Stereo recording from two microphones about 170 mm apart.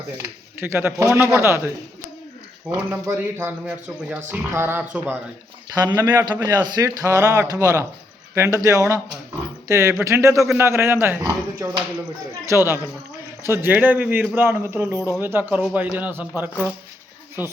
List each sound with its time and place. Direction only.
0.2 s speech: 15° right (ahead or behind)
2.6 s a man's voice: 10° right (ahead or behind)